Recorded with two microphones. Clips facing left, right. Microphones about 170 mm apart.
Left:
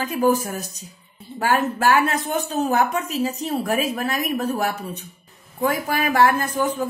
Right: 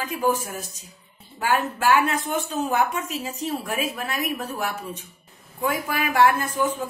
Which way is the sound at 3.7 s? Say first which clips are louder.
Left 5 dB; 45° left (ahead or behind).